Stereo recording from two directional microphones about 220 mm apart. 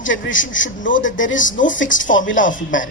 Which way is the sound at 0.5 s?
35° left (ahead or behind).